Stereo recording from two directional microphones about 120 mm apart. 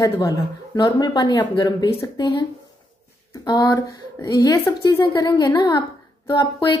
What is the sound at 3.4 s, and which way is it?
A woman's voice, 30° left (ahead or behind).